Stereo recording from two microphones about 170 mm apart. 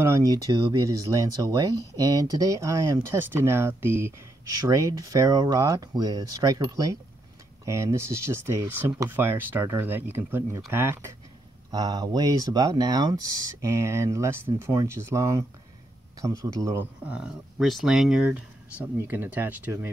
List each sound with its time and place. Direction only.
0.0 s speech: 20° right (ahead or behind)
17.0 s speech: 5° right (ahead or behind)